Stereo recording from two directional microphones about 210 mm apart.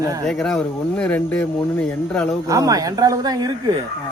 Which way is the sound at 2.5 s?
15° right (ahead or behind).